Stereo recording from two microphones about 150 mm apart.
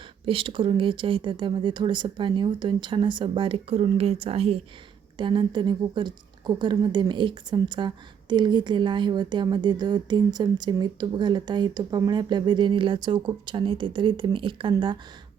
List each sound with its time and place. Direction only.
0.3 s a woman's voice: 35° right (ahead or behind)